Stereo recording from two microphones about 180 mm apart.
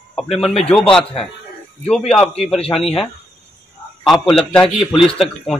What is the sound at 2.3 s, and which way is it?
Speech, 35° left (ahead or behind).